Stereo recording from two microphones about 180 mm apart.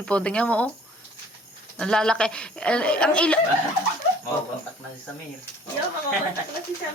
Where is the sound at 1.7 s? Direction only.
5° left (ahead or behind).